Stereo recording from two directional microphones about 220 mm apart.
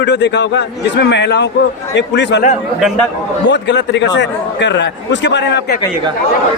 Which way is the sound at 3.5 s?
55° left (ahead or behind).